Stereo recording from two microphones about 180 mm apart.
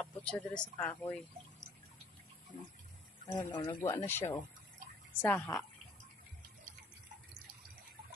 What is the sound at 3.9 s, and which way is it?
Speech, 15° left (ahead or behind).